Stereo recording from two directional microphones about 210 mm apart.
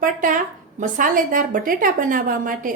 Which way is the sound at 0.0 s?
40° right (ahead or behind).